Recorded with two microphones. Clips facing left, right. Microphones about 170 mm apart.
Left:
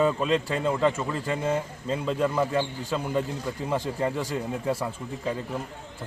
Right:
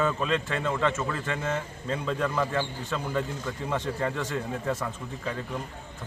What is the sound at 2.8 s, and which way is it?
Speech, 30° left (ahead or behind).